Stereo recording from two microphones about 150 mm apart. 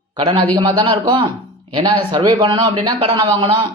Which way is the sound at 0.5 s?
30° right (ahead or behind).